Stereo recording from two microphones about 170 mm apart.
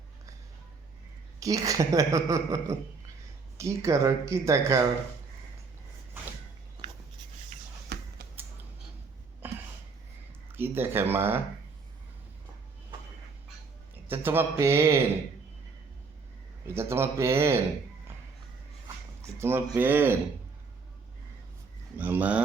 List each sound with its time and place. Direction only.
1.4 s a woman's voice: 20° right (ahead or behind)
7.9 s a sound: 85° right
9.4 s a sound: 10° right (ahead or behind)
10.5 s speech: 15° right (ahead or behind)
14.1 s speech: 10° right (ahead or behind)
16.7 s speech: 15° right (ahead or behind)
19.2 s speech: 15° right (ahead or behind)
21.9 s speech: 10° right (ahead or behind)